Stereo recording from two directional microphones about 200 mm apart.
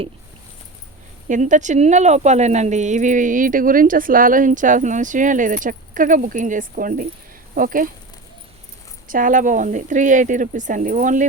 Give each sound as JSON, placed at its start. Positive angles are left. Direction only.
{"t": 1.3, "sound": "speech", "side_deg": -40}
{"t": 9.0, "sound": "speech", "side_deg": -40}